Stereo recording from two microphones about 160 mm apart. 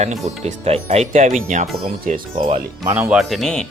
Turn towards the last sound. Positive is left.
turn(degrees=0)  # may be behind; listen again after turning